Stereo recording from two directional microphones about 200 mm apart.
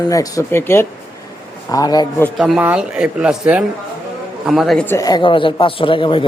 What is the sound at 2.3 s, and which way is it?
Speech, centre (ahead or behind).